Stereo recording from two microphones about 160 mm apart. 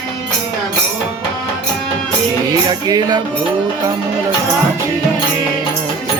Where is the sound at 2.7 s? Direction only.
25° right (ahead or behind).